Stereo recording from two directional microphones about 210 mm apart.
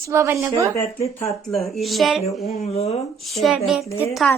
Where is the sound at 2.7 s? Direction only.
30° left (ahead or behind).